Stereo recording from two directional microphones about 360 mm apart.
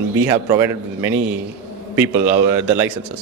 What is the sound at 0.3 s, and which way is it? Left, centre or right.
A man's voice, centre.